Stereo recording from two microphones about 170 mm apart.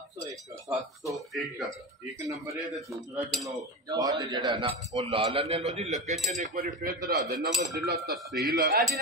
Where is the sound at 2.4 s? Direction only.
20° right (ahead or behind).